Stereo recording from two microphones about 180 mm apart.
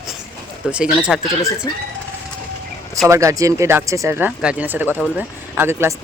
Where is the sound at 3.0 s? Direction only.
15° right (ahead or behind).